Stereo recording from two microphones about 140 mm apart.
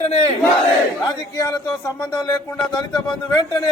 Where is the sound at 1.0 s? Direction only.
25° left (ahead or behind).